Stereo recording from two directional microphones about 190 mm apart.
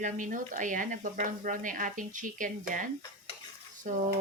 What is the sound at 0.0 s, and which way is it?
Speech, 45° right (ahead or behind).